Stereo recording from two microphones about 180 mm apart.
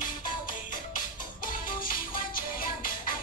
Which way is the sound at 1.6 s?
50° left (ahead or behind).